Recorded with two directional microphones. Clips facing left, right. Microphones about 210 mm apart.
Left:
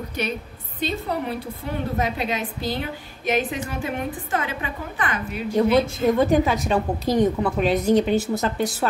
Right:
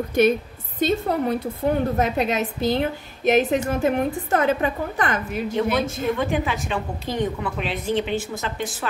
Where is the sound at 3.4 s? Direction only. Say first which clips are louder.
Right 7 dB; 40° right (ahead or behind).